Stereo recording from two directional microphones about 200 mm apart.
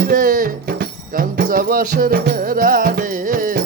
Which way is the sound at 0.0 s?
45° right (ahead or behind).